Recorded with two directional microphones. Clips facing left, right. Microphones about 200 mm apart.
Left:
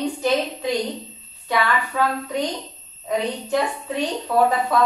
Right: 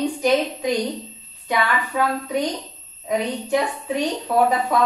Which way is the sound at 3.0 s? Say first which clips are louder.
Right 1 dB; 15° right (ahead or behind).